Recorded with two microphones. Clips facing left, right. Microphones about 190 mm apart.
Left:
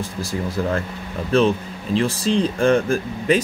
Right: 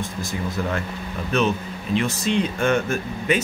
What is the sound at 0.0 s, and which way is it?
Speech, 30° left (ahead or behind).